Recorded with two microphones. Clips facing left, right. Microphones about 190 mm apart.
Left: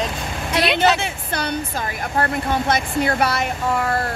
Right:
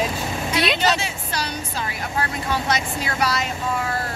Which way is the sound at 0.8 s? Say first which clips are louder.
Left 4 dB; 55° left (ahead or behind).